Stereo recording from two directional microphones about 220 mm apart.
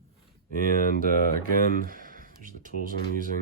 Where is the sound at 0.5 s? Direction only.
40° right (ahead or behind).